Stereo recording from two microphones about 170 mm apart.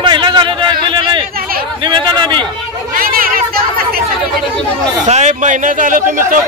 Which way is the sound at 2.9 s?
60° right (ahead or behind).